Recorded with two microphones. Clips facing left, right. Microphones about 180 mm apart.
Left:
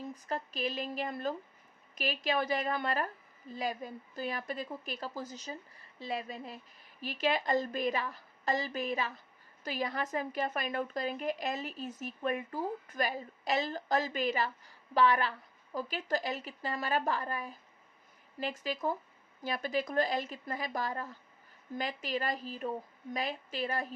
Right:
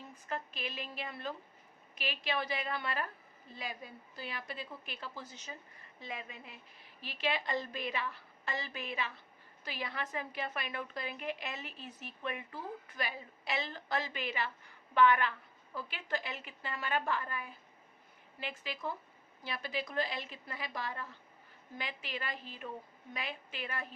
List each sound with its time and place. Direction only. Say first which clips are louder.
0.1 s a woman's voice: left 4 dB; 35° left (ahead or behind)